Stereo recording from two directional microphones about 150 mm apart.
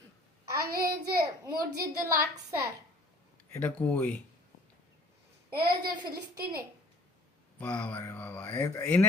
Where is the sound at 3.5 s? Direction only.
10° left (ahead or behind).